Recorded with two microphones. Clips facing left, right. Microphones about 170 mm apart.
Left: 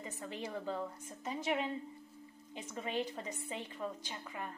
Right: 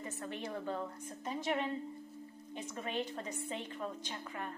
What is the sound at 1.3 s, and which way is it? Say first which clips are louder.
Speech: even; 20° left (ahead or behind).